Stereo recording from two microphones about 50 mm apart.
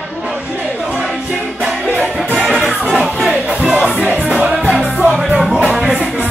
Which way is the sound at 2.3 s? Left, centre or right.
Centre.